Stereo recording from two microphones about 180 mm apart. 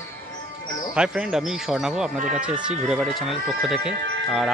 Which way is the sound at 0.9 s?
5° right (ahead or behind).